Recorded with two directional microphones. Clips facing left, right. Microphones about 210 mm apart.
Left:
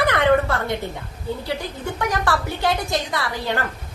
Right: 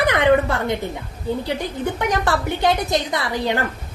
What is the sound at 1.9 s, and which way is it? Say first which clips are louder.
A woman's voice: even; 20° right (ahead or behind).